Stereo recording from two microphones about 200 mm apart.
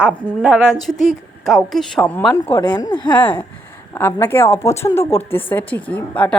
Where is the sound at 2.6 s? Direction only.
20° left (ahead or behind).